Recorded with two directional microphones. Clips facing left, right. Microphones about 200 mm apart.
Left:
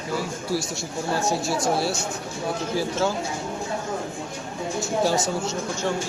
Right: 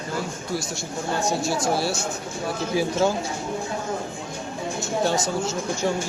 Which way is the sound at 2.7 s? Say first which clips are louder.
Right 4 dB; 15° right (ahead or behind).